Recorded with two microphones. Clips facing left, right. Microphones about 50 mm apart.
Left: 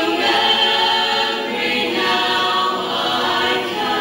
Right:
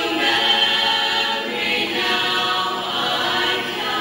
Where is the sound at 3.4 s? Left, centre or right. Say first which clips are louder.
Left 3 dB; centre.